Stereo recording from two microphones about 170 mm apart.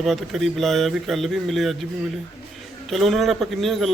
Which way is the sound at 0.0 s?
Centre (ahead or behind).